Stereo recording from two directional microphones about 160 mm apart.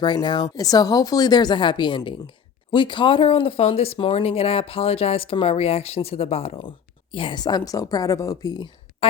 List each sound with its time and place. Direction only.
0.0 s speech: 30° left (ahead or behind)